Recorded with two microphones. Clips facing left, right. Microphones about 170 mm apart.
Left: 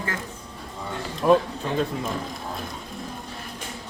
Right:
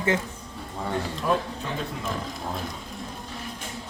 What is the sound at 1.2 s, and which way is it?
Speech, 45° left (ahead or behind).